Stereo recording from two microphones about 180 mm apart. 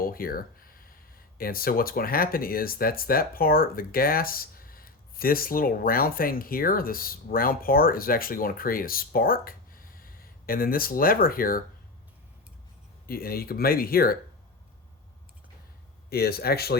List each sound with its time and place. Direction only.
0.0 s a sound: 55° left (ahead or behind)
1.4 s speech: 55° left (ahead or behind)
13.1 s speech: 55° left (ahead or behind)
16.0 s speech: 60° left (ahead or behind)